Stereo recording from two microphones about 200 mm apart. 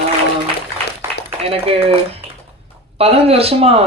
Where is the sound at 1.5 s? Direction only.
30° right (ahead or behind).